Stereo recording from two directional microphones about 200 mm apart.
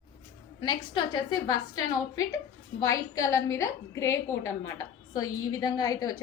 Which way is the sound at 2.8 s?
15° left (ahead or behind).